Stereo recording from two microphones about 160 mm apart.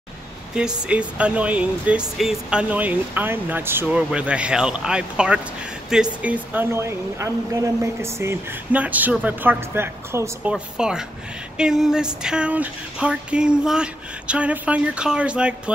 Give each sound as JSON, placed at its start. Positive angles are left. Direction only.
{"t": 0.6, "sound": "a woman's voice", "side_deg": -5}
{"t": 10.5, "sound": "a woman's voice", "side_deg": -5}